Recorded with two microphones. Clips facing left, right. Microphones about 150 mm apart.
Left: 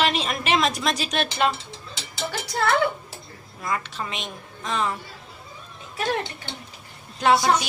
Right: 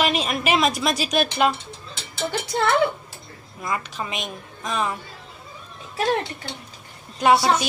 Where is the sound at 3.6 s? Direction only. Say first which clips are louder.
Right 1 dB; 10° right (ahead or behind).